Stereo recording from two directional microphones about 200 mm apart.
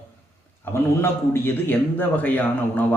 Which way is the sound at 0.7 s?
10° left (ahead or behind).